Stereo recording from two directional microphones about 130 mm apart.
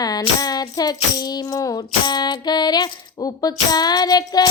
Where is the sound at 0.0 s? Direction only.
30° left (ahead or behind).